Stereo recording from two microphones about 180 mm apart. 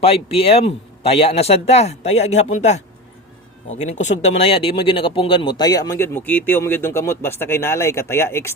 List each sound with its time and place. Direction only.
0.0 s speech: 30° left (ahead or behind); by 8.5 s 15° left (ahead or behind)